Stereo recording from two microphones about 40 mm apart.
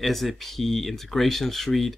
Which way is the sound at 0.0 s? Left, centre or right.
Centre.